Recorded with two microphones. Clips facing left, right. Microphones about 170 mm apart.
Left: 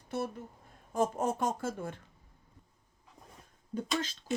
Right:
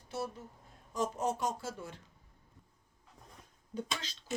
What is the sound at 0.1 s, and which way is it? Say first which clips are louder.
A woman's voice: left 4 dB; 55° left (ahead or behind).